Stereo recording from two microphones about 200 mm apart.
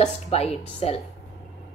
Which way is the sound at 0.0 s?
30° left (ahead or behind).